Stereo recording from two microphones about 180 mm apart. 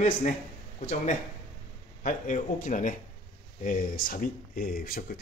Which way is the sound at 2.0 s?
45° left (ahead or behind).